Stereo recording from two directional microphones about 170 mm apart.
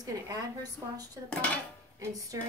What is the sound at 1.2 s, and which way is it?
Dishes, 5° left (ahead or behind).